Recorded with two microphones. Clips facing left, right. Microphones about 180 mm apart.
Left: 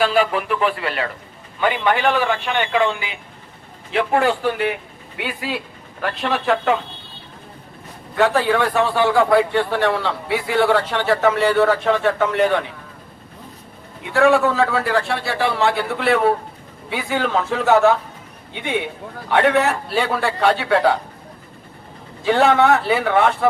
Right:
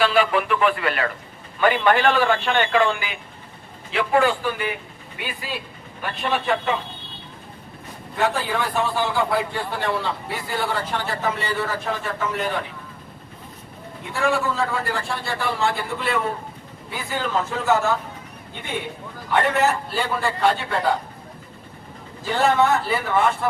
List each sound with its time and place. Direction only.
0.0 s speech: 40° left (ahead or behind)
1.6 s a man's voice: 15° left (ahead or behind)
3.9 s a man's voice: 60° left (ahead or behind); by 6.7 s 75° left (ahead or behind)
8.1 s a man's voice: 75° left (ahead or behind)
14.1 s a man's voice: 70° left (ahead or behind)
19.3 s a man's voice: 75° left (ahead or behind)
22.2 s a man's voice: 70° left (ahead or behind)